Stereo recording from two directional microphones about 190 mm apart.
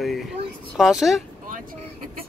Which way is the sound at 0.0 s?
Centre (ahead or behind).